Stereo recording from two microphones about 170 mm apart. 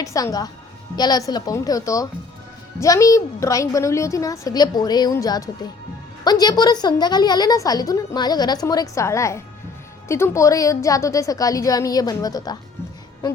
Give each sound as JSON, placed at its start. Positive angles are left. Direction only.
{"t": 0.0, "sound": "a woman's voice", "side_deg": 20}